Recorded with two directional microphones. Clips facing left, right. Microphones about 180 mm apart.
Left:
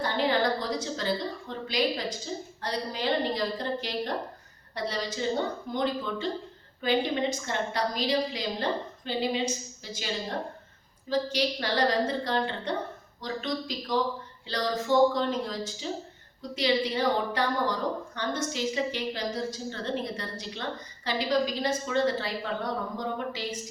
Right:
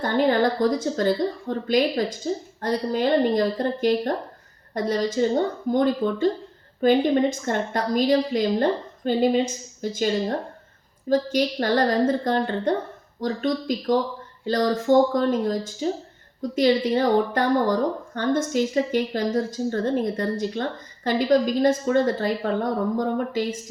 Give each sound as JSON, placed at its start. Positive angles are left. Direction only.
{"t": 0.0, "sound": "a woman's voice", "side_deg": -50}